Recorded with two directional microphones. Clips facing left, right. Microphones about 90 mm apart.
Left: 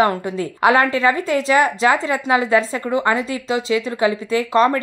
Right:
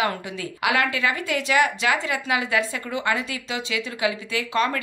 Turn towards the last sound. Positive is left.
turn(degrees=35)  # may be behind; listen again after turning